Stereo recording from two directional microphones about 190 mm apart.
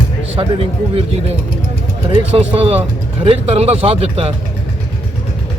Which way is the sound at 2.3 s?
30° right (ahead or behind).